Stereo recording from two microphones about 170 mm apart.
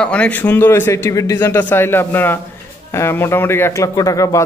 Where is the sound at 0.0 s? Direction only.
10° left (ahead or behind).